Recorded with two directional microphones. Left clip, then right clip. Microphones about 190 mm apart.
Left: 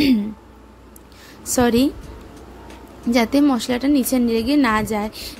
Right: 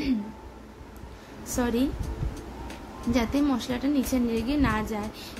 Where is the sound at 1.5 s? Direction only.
55° left (ahead or behind).